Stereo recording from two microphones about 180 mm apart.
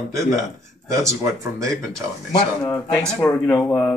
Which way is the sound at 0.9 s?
15° right (ahead or behind).